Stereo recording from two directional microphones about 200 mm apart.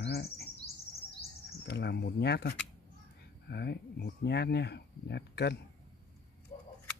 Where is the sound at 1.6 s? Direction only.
55° left (ahead or behind).